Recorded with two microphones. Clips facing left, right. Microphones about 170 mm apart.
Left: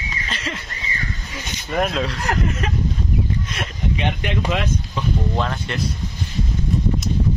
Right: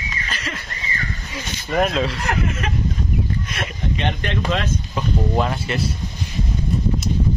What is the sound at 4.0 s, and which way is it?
Speech, 10° left (ahead or behind).